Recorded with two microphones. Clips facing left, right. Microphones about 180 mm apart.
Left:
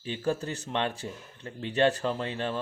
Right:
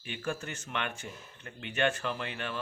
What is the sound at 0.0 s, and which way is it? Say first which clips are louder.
Speech: left 6 dB; 35° left (ahead or behind).